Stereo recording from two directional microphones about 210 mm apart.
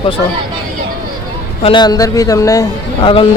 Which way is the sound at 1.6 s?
20° left (ahead or behind).